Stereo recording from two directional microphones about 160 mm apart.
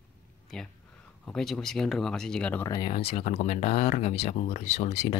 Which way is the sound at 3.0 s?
40° left (ahead or behind).